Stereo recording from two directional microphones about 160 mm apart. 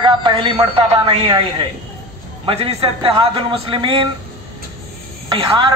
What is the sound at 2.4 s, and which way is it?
Speech, 35° right (ahead or behind).